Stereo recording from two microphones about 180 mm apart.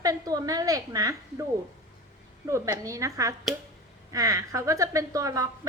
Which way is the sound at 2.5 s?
15° right (ahead or behind).